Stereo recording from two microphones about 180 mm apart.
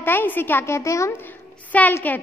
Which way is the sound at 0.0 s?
10° left (ahead or behind).